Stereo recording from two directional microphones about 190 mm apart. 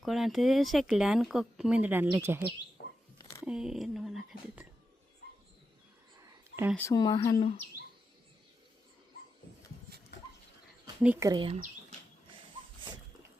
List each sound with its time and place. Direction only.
0.0 s speech: centre (ahead or behind)
2.8 s a sound: 60° left (ahead or behind)
3.4 s speech: 5° right (ahead or behind)
6.1 s a sound: 10° right (ahead or behind)
6.7 s speech: 15° left (ahead or behind)
11.0 s speech: 10° right (ahead or behind)
11.3 s speech: 25° right (ahead or behind)
11.5 s bird: 35° right (ahead or behind)